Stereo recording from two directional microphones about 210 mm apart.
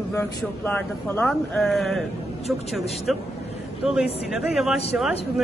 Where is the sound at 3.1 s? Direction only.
Centre (ahead or behind).